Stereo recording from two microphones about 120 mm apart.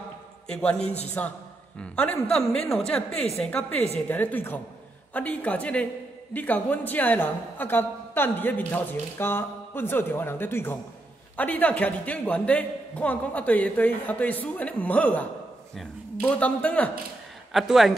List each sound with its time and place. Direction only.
0.5 s a man's voice: 10° left (ahead or behind)
0.8 s a man's voice: 65° left (ahead or behind)
1.8 s a man's voice: 10° left (ahead or behind)
17.5 s speech: centre (ahead or behind)